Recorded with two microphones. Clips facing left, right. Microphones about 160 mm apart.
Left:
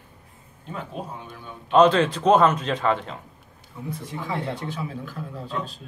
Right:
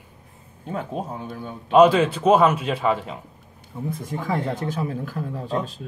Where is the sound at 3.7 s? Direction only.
55° right (ahead or behind).